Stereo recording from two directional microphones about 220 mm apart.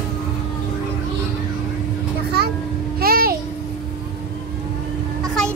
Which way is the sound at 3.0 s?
45° right (ahead or behind).